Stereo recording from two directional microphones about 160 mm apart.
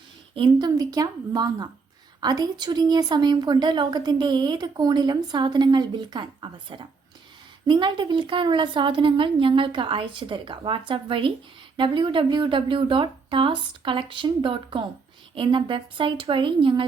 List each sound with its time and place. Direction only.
0.3 s a woman's voice: 30° right (ahead or behind)